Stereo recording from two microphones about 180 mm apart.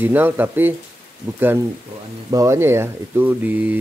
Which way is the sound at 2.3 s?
15° right (ahead or behind).